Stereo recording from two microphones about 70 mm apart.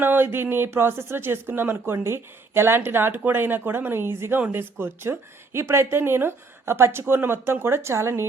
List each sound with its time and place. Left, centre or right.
0.0 s speech: right
4.4 s speech: right
4.8 s speech: right